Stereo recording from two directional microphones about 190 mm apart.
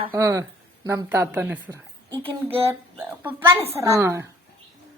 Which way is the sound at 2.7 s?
10° right (ahead or behind).